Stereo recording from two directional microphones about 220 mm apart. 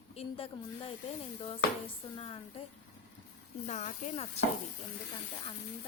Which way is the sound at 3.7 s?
30° left (ahead or behind).